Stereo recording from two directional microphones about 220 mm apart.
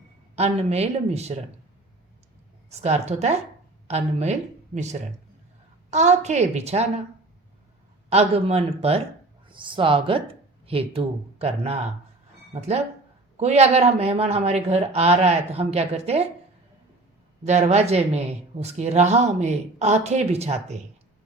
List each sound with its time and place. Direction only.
0.3 s speech: 30° right (ahead or behind)
2.6 s a woman's voice: 30° right (ahead or behind)
8.1 s speech: 30° right (ahead or behind)
17.4 s speech: 30° right (ahead or behind)